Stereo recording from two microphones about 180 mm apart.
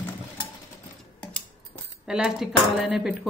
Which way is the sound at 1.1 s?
5° left (ahead or behind).